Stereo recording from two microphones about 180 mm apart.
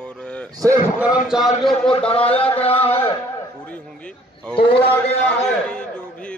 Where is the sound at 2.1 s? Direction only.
30° left (ahead or behind).